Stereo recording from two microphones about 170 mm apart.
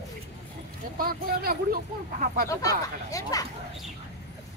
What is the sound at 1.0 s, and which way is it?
Speech, 60° right (ahead or behind).